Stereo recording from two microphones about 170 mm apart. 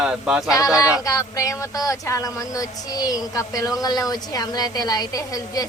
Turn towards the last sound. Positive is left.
turn(degrees=20)  # may be behind; listen again after turning